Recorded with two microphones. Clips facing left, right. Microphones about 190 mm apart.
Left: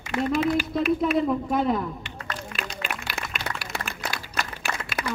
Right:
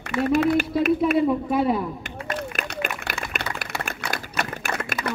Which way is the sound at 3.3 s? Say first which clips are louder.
Right 2 dB; 55° right (ahead or behind).